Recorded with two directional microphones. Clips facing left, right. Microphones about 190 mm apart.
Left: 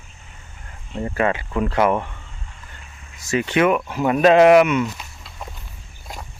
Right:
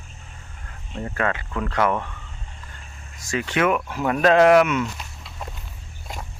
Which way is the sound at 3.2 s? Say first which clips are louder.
Left 4 dB; 5° left (ahead or behind).